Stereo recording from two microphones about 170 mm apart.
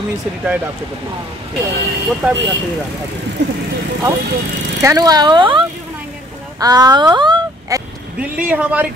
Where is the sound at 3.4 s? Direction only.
80° right.